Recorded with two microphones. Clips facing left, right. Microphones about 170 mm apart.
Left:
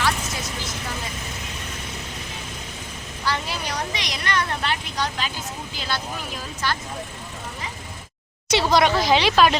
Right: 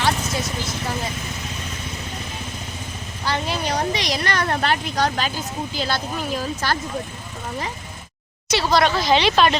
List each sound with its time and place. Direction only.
3.2 s a sound: 25° right (ahead or behind); by 4.5 s 40° right (ahead or behind)
4.5 s speech: 45° right (ahead or behind)
8.4 s speech: 20° left (ahead or behind); by 9.6 s 5° left (ahead or behind)